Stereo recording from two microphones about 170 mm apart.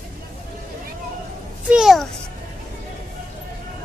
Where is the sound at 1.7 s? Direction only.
Centre (ahead or behind).